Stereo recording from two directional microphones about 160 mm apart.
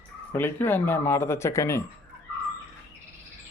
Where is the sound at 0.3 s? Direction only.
15° left (ahead or behind).